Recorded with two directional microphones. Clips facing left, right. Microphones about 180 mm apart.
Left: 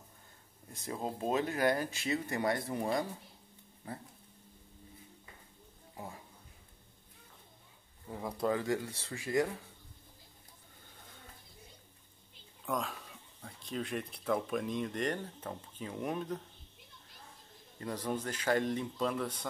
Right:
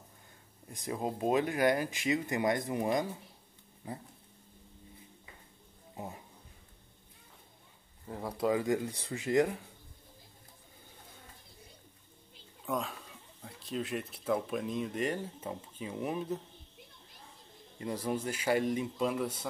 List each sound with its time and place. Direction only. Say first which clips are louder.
0.7 s speech: right 3 dB; 15° right (ahead or behind)
5.9 s speech: right 3 dB; 20° right (ahead or behind)
8.1 s speech: right 2 dB; 5° right (ahead or behind)
8.6 s speech: right 3 dB; 15° right (ahead or behind)
12.6 s speech: right 1 dB; centre (ahead or behind)
17.7 s speech: right 2 dB; 10° right (ahead or behind)